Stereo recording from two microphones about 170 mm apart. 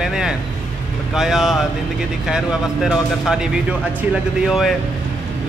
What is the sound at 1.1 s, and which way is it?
Speech, centre (ahead or behind).